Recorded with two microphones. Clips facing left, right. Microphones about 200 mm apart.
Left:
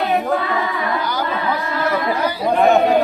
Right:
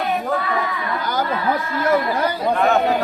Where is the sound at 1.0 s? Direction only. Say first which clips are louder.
Even; 50° right (ahead or behind).